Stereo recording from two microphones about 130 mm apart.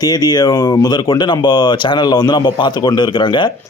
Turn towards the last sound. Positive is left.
turn(degrees=35)  # may be behind; listen again after turning